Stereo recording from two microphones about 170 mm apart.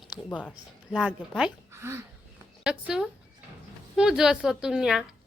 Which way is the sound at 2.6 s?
5° right (ahead or behind).